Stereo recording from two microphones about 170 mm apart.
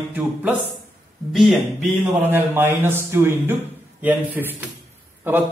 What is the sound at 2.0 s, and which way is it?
Speech, 10° right (ahead or behind).